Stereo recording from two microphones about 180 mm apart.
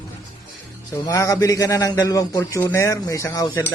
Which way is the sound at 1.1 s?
15° left (ahead or behind).